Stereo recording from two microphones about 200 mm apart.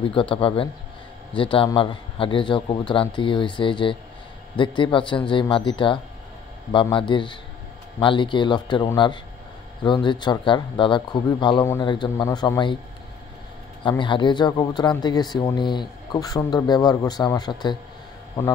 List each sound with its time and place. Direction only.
0.1 s a man's voice: 25° left (ahead or behind)
13.8 s a man's voice: 25° left (ahead or behind)